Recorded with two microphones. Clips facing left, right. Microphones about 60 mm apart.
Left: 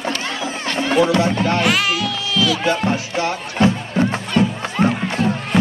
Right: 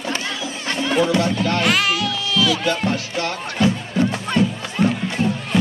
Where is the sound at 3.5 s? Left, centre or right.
Left.